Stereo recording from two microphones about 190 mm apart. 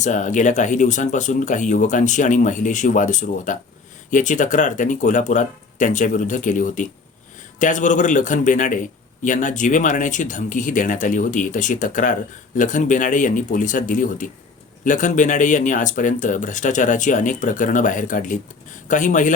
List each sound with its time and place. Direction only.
0.0 s a man's voice: 40° left (ahead or behind)